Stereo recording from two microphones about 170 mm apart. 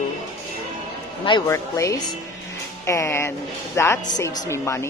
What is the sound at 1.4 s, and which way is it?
A man's voice, 15° left (ahead or behind).